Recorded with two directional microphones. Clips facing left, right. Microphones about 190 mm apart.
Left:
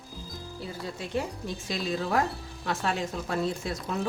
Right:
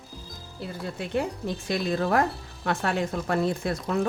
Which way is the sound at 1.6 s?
55° right (ahead or behind).